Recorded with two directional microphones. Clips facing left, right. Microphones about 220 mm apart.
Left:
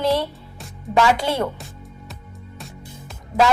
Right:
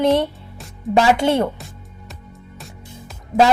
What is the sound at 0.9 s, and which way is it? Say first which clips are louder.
Speech: right 3 dB; 25° right (ahead or behind).